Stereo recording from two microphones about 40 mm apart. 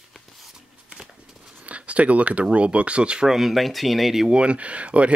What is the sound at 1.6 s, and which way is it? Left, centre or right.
Speech, right.